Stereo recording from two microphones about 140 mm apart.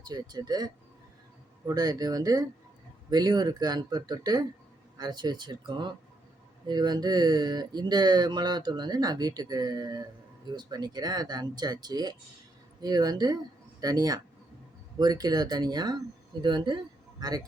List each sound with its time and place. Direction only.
0.1 s speech: 30° right (ahead or behind)